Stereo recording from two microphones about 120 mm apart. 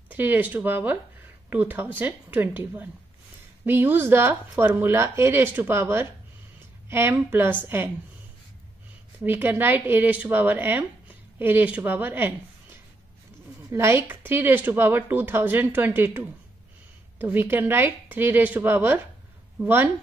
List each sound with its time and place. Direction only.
0.1 s speech: 15° right (ahead or behind)
9.2 s speech: 15° right (ahead or behind)